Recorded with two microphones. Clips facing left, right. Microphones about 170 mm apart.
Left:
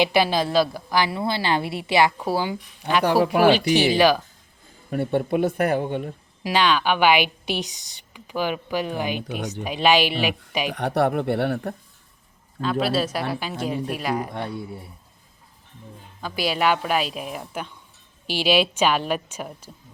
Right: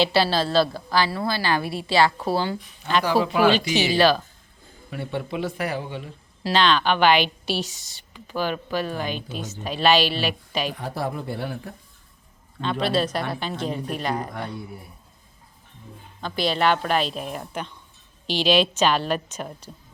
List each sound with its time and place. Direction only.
0.0 s a woman's voice: 15° left (ahead or behind)
4.9 s speech: 50° left (ahead or behind)
6.4 s a woman's voice: 10° left (ahead or behind)
10.7 s speech: 70° left (ahead or behind)
12.6 s a man's voice: 5° left (ahead or behind)
16.2 s a woman's voice: 10° left (ahead or behind)